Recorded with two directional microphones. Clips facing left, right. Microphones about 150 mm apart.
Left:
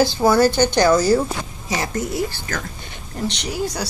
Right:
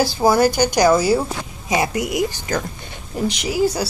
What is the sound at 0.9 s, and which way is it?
A woman's voice, 5° right (ahead or behind).